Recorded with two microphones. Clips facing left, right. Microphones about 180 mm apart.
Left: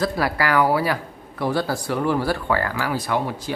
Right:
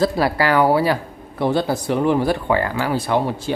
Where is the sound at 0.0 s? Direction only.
25° right (ahead or behind).